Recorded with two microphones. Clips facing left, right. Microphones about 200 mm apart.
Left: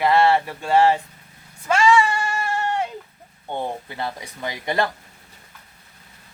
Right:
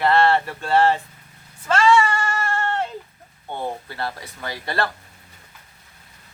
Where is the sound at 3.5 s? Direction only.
15° left (ahead or behind).